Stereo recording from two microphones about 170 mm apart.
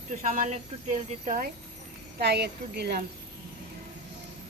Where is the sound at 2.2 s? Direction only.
75° right (ahead or behind).